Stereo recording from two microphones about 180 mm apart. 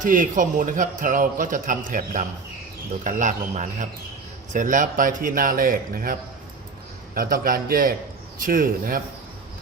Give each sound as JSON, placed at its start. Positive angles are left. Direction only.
{"t": 0.0, "sound": "a man's voice", "side_deg": -45}